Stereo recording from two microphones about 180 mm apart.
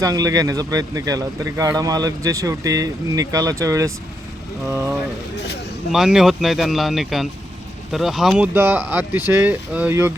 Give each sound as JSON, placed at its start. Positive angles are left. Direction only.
{"t": 0.0, "sound": "speech", "side_deg": -20}
{"t": 5.9, "sound": "speech", "side_deg": -5}